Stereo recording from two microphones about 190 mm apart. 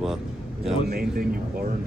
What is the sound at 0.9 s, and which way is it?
Speech, 50° right (ahead or behind).